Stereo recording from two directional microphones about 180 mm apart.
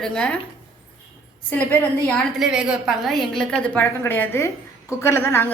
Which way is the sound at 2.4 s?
5° right (ahead or behind).